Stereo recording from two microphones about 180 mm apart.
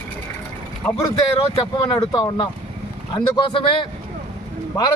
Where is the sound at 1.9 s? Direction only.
25° left (ahead or behind).